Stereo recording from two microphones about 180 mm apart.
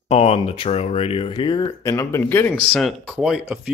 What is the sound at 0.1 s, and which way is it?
Speech, 35° left (ahead or behind).